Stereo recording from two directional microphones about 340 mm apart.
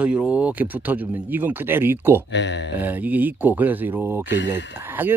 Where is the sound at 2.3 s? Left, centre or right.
Left.